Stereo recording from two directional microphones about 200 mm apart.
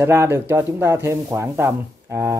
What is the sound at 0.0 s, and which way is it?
Speech, 10° right (ahead or behind).